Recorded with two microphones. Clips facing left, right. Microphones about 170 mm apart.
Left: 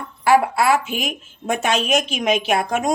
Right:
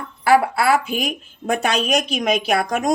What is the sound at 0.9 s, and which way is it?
A woman's voice, 35° right (ahead or behind).